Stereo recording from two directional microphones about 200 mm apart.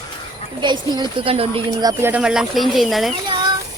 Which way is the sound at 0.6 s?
20° right (ahead or behind).